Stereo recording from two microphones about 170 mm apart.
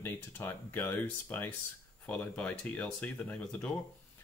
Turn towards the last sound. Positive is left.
turn(degrees=10)  # may be behind; listen again after turning